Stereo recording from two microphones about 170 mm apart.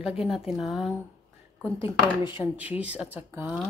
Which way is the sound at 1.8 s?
30° left (ahead or behind).